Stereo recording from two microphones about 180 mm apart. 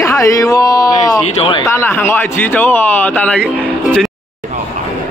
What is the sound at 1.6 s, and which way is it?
Speech, 15° left (ahead or behind).